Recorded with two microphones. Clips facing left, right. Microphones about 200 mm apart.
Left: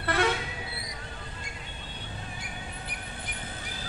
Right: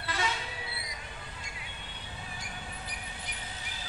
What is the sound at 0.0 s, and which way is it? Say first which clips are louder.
Toot: left 8 dB; 60° left (ahead or behind).